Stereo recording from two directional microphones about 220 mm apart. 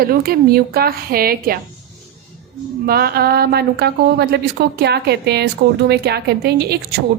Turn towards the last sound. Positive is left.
turn(degrees=-45)  # may be behind; listen again after turning